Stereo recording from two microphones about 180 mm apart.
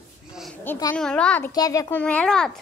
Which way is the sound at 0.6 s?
15° left (ahead or behind).